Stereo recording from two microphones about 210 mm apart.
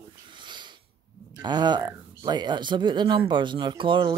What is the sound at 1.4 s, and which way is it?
Speech, 20° right (ahead or behind).